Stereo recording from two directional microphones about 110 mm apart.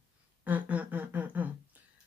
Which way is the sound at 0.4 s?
15° right (ahead or behind).